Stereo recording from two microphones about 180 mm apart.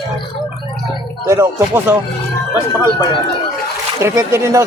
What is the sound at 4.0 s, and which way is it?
Speech, 15° right (ahead or behind).